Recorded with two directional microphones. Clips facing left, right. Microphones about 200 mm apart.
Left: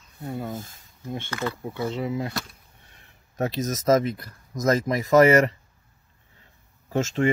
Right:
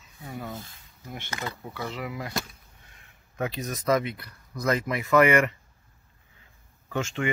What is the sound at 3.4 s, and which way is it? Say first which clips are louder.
Speech: left 5 dB; 40° left (ahead or behind).